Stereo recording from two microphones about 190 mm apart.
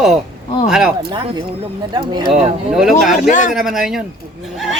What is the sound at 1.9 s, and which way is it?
Speech, 20° right (ahead or behind).